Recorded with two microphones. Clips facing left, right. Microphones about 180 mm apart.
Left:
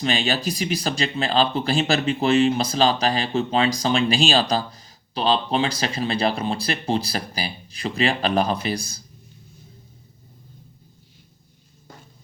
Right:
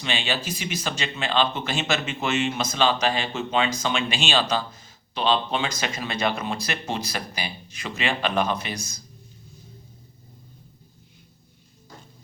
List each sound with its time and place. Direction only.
0.0 s speech: 40° left (ahead or behind)